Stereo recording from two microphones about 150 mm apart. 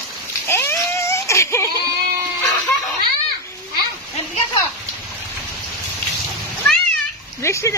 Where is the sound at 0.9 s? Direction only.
20° left (ahead or behind).